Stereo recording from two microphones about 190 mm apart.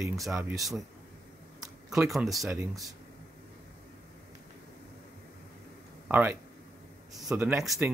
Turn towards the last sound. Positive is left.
turn(degrees=-5)  # may be behind; listen again after turning